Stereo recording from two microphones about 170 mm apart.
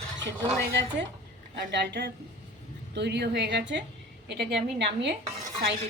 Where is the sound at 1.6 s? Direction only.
90° right.